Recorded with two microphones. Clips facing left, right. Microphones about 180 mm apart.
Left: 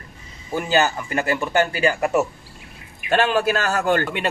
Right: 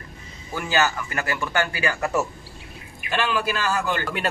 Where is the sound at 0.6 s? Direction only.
25° left (ahead or behind).